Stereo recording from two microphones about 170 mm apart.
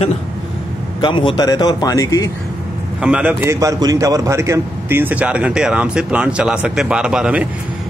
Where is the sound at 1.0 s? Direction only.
30° left (ahead or behind).